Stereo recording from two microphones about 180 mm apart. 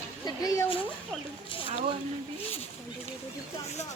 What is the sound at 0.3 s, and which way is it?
Speech, 20° left (ahead or behind).